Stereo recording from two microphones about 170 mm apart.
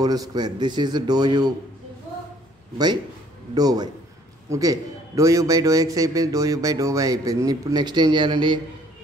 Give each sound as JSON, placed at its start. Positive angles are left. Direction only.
{"t": 0.0, "sound": "a man's voice", "side_deg": -20}
{"t": 3.5, "sound": "a man's voice", "side_deg": -25}